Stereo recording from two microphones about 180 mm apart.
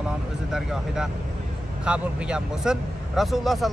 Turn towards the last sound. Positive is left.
turn(degrees=0)  # may be behind; listen again after turning